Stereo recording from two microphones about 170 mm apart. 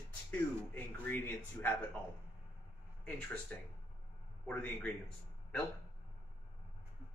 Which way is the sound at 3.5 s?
10° left (ahead or behind).